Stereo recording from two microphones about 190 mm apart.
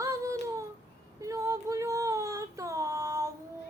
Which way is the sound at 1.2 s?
15° right (ahead or behind).